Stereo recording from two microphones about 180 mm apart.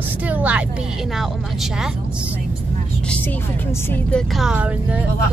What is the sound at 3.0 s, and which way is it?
Speech, 10° left (ahead or behind).